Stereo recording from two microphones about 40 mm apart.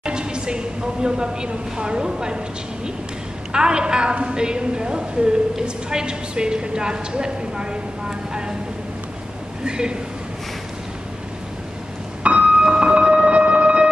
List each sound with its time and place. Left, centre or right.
0.0 s a woman's voice: right
3.5 s a woman's voice: right
9.7 s a woman's voice: right
12.2 s music: right